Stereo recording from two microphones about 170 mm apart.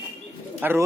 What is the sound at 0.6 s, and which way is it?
Speech, 10° right (ahead or behind).